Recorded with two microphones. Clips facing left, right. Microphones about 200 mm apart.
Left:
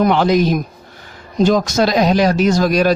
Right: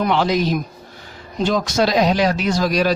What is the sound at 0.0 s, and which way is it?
Speech, 50° left (ahead or behind).